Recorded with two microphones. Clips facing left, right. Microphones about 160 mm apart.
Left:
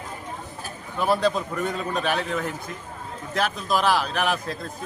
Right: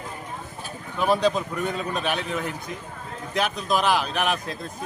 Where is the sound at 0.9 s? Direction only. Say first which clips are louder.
Right 1 dB; 15° right (ahead or behind).